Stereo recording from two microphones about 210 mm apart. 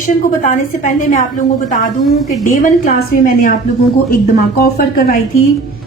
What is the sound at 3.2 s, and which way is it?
Speech, 40° left (ahead or behind).